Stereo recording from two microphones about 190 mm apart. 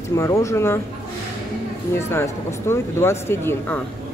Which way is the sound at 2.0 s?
15° left (ahead or behind).